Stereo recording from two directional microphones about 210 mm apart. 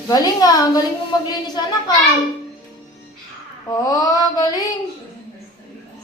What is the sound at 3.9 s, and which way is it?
Speech, 15° left (ahead or behind).